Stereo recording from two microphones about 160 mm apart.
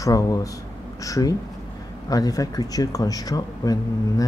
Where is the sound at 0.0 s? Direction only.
20° left (ahead or behind).